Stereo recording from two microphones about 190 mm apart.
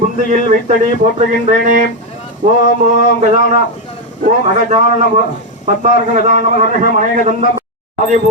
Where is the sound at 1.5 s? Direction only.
45° right (ahead or behind).